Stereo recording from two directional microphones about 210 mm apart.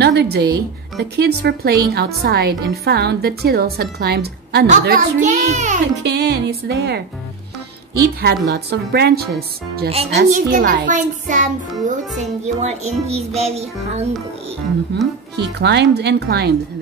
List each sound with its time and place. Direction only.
0.0 s speech: 50° right (ahead or behind); by 5.8 s 35° right (ahead or behind)
6.0 s speech: 50° right (ahead or behind)
8.0 s speech: 50° right (ahead or behind)
10.9 s child singing: 35° right (ahead or behind)
15.3 s speech: 50° right (ahead or behind)